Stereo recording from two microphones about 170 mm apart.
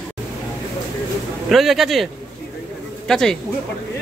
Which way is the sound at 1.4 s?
Centre (ahead or behind).